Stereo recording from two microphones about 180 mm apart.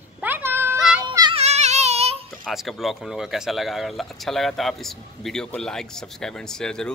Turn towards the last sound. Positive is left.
turn(degrees=5)  # may be behind; listen again after turning